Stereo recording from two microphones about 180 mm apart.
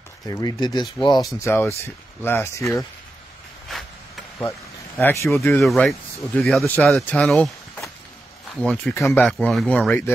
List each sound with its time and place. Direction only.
0.3 s speech: 20° left (ahead or behind)
3.7 s a sound: 5° left (ahead or behind)
4.4 s speech: 15° left (ahead or behind)
5.6 s speech: centre (ahead or behind)
8.9 s speech: 15° left (ahead or behind)